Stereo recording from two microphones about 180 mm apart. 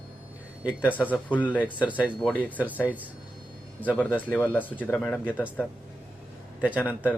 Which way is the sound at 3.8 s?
10° left (ahead or behind).